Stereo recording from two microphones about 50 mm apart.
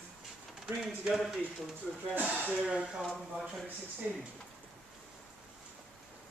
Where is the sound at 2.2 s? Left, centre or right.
Right.